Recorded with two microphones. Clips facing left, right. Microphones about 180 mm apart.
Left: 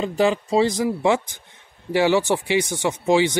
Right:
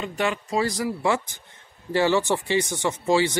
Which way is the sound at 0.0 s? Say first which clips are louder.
Left 7 dB; 30° left (ahead or behind).